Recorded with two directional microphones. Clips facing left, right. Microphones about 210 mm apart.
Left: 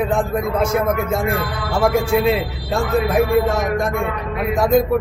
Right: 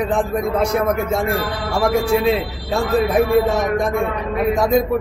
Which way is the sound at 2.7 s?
Centre (ahead or behind).